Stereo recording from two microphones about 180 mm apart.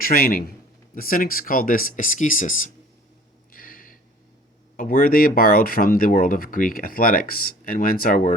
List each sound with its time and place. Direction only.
0.0 s speech: 50° left (ahead or behind)
3.5 s a sound: 50° left (ahead or behind)
4.8 s speech: 50° left (ahead or behind)